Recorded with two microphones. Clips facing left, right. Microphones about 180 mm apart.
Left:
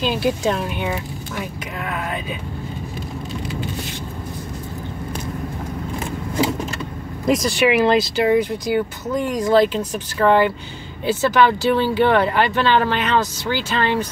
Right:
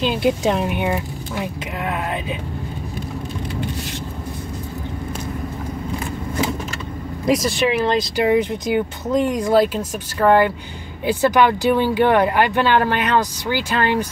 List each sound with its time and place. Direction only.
0.0 s speech: 20° right (ahead or behind)
7.2 s speech: centre (ahead or behind)
7.6 s speech: 10° left (ahead or behind)
8.2 s speech: 20° right (ahead or behind)
9.5 s speech: 10° right (ahead or behind)